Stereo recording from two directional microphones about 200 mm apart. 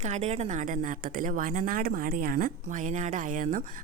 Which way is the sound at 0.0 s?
35° right (ahead or behind).